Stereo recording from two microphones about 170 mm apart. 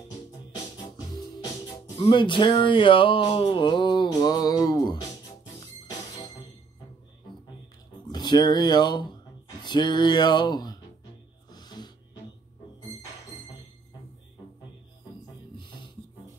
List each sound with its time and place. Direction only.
1.0 s music: 25° left (ahead or behind)
2.0 s a sound: 30° left (ahead or behind)
5.9 s music: 25° left (ahead or behind)
8.1 s speech: 25° left (ahead or behind)
11.5 s music: 25° left (ahead or behind)